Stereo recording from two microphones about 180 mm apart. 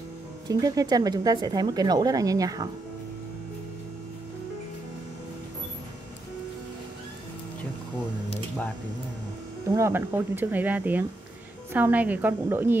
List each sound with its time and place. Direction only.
0.5 s speech: 20° right (ahead or behind)
9.8 s speech: 15° right (ahead or behind)